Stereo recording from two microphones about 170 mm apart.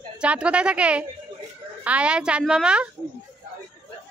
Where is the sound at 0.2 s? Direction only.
5° right (ahead or behind).